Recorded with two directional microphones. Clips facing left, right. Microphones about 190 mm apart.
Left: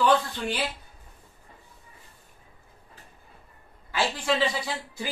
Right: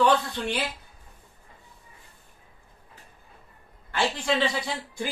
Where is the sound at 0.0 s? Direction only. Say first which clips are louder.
Even; centre (ahead or behind).